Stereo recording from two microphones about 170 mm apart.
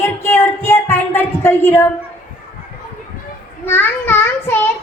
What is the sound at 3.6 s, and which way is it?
Speech, 10° left (ahead or behind).